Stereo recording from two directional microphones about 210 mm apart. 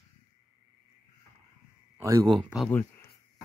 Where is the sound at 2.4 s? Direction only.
Centre (ahead or behind).